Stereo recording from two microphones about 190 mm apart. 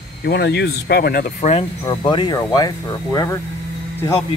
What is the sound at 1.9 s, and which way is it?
Speech, 25° left (ahead or behind).